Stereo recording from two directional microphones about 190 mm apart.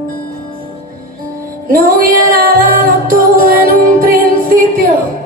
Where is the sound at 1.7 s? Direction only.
50° right (ahead or behind).